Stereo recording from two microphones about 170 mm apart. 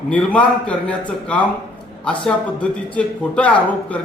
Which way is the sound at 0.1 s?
10° left (ahead or behind).